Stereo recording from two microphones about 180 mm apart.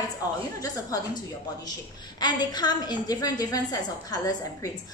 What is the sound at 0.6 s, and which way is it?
A woman's voice, 20° left (ahead or behind).